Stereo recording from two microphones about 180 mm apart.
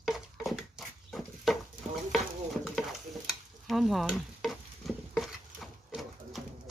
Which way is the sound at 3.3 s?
Centre (ahead or behind).